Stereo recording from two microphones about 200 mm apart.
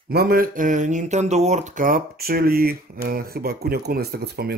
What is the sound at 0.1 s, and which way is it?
Speech, 50° right (ahead or behind).